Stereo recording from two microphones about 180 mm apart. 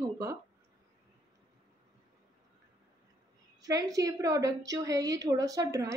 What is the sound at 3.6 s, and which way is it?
A woman's voice, 20° right (ahead or behind).